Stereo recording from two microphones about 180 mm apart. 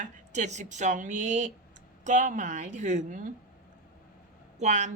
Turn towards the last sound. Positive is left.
turn(degrees=-40)  # may be behind; listen again after turning